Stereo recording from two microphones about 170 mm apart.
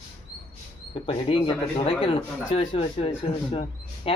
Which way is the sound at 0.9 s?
30° left (ahead or behind).